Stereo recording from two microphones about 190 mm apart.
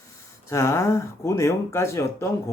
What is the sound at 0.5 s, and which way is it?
Speech, 15° left (ahead or behind).